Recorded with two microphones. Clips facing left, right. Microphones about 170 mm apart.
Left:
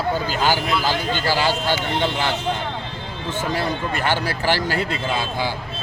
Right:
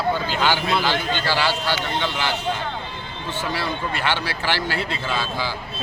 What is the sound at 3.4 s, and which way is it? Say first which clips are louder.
Speech: left 3 dB; 45° left (ahead or behind).